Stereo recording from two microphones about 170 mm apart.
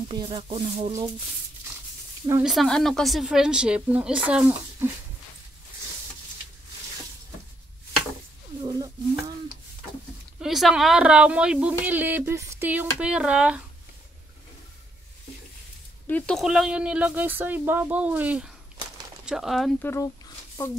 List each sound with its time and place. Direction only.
0.1 s speech: 25° right (ahead or behind)
0.4 s speech: 40° right (ahead or behind)
2.4 s speech: centre (ahead or behind)
8.6 s a sound: 25° right (ahead or behind)
10.4 s speech: centre (ahead or behind)
16.1 s speech: 5° left (ahead or behind)
19.8 s speech: 15° left (ahead or behind)